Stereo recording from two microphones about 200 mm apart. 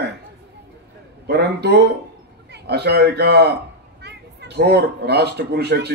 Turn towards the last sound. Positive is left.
turn(degrees=-55)  # may be behind; listen again after turning